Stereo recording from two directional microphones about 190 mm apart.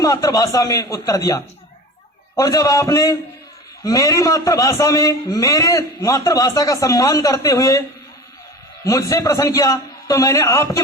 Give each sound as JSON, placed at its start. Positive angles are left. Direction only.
{"t": 0.0, "sound": "a man's voice", "side_deg": 20}